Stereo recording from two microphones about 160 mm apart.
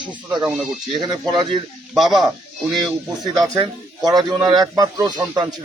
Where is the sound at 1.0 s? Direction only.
30° right (ahead or behind).